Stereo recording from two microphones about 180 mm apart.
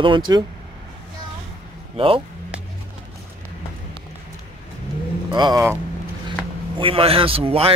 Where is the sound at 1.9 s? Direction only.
30° right (ahead or behind).